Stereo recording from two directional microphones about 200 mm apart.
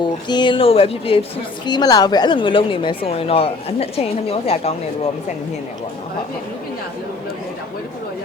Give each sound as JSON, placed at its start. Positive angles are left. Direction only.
{"t": 0.0, "sound": "a woman's voice", "side_deg": 20}